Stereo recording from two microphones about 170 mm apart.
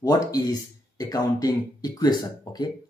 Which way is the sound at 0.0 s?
20° left (ahead or behind).